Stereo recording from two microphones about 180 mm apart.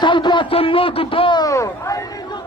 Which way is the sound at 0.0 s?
25° left (ahead or behind).